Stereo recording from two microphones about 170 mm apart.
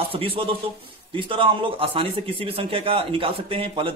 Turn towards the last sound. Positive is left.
turn(degrees=-30)  # may be behind; listen again after turning